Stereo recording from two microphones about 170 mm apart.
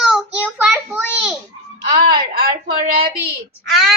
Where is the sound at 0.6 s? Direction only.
5° right (ahead or behind).